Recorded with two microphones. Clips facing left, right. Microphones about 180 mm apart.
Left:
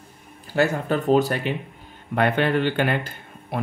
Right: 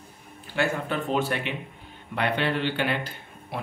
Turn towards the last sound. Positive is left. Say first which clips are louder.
# left 5 dB
turn(degrees=50)  # may be behind; listen again after turning